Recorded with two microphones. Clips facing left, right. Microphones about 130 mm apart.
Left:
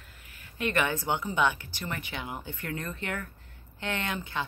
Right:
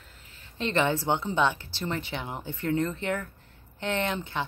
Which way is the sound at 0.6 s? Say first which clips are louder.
Right 3 dB; 25° right (ahead or behind).